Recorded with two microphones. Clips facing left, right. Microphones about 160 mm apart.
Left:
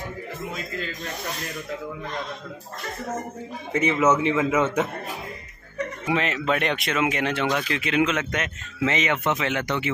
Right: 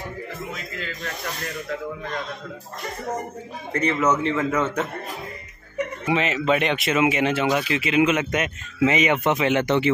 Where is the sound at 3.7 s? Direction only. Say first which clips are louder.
Left 1 dB; 10° left (ahead or behind).